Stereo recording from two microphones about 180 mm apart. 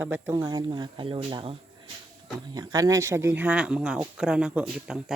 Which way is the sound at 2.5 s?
20° right (ahead or behind).